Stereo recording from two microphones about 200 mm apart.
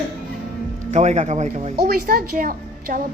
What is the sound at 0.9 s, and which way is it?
Speech, 35° right (ahead or behind).